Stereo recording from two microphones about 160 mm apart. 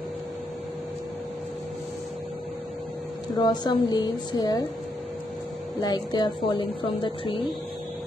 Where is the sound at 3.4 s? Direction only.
25° left (ahead or behind).